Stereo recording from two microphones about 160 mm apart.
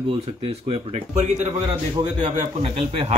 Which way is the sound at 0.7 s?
35° right (ahead or behind).